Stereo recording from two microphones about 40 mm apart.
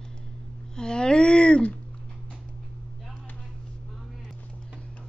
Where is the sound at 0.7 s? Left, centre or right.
Left.